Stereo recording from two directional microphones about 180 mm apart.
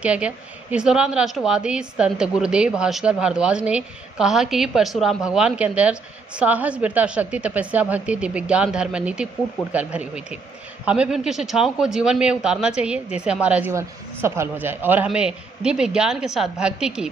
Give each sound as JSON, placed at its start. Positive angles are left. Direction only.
{"t": 0.0, "sound": "a woman's voice", "side_deg": -5}